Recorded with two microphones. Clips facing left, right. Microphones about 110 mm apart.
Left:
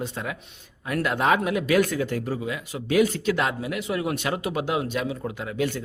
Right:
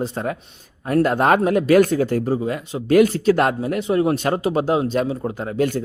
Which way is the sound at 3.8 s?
30° right (ahead or behind).